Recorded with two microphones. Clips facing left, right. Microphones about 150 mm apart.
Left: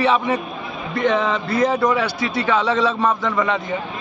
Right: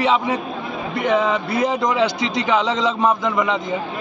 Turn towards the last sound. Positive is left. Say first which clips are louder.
# right 1 dB
turn(degrees=-15)  # may be behind; listen again after turning